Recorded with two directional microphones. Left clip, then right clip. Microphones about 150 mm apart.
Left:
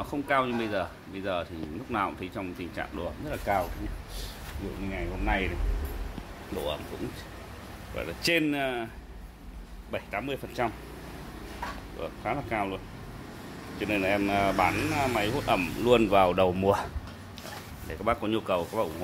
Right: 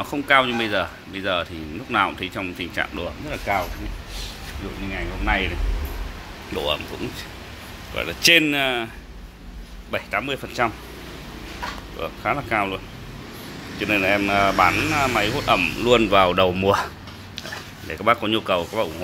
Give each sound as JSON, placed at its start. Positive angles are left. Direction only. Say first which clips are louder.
{"t": 0.0, "sound": "speech", "louder": "right 9 dB", "side_deg": 5}
{"t": 3.3, "sound": "speech", "louder": "right 5 dB", "side_deg": 20}
{"t": 5.2, "sound": "speech", "louder": "right 7 dB", "side_deg": 25}
{"t": 7.9, "sound": "speech", "louder": "right 11 dB", "side_deg": 0}
{"t": 9.8, "sound": "speech", "louder": "right 8 dB", "side_deg": 5}
{"t": 12.0, "sound": "speech", "louder": "right 8 dB", "side_deg": 0}